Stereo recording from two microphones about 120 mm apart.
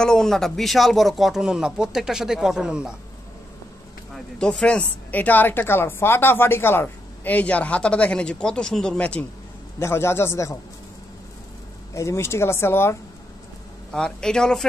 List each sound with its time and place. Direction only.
0.0 s speech: 5° left (ahead or behind)
4.1 s speech: 5° left (ahead or behind)
9.8 s speech: 20° left (ahead or behind)
11.9 s speech: 25° left (ahead or behind)
13.9 s speech: 5° left (ahead or behind)